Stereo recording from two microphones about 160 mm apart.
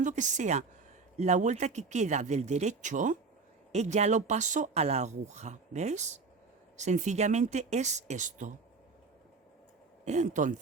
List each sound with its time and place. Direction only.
0.0 s speech: 50° right (ahead or behind)
10.1 s speech: 50° right (ahead or behind)